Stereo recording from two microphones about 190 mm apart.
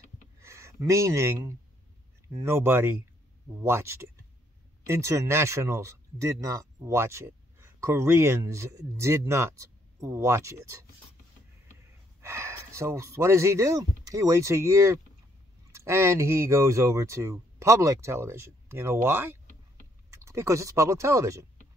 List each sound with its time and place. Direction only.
0.4 s speech: 15° right (ahead or behind)
12.2 s speech: 15° right (ahead or behind)